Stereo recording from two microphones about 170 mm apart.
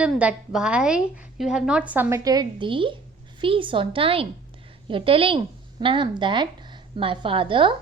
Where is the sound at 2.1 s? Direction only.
25° right (ahead or behind).